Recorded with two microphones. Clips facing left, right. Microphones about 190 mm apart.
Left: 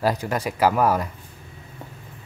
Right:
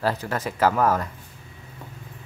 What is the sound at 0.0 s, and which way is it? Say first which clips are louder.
Speech: left 2 dB; 15° left (ahead or behind).